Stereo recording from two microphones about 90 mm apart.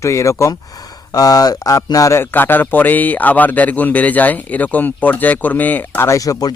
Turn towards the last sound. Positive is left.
turn(degrees=45)  # may be behind; listen again after turning